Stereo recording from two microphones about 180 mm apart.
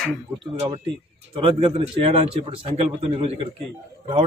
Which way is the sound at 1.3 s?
30° right (ahead or behind).